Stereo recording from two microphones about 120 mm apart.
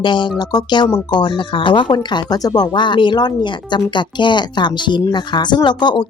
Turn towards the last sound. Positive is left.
turn(degrees=40)  # may be behind; listen again after turning